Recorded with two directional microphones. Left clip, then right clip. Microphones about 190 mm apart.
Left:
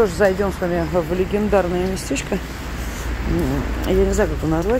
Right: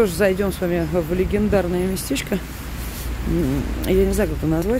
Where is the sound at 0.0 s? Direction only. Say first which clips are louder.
Left 2 dB; 35° right (ahead or behind).